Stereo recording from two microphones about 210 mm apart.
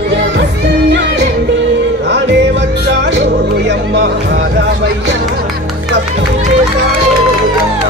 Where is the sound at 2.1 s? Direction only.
55° right (ahead or behind).